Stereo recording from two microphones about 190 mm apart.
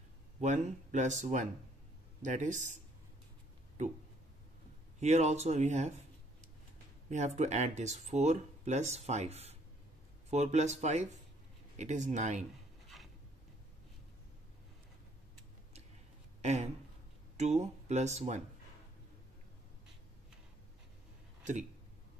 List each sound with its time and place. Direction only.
0.4 s speech: 40° right (ahead or behind)
5.0 s speech: 35° right (ahead or behind)
7.1 s speech: 40° right (ahead or behind)
12.8 s a sound: centre (ahead or behind)
16.3 s a sound: 35° right (ahead or behind)
17.4 s speech: 35° right (ahead or behind)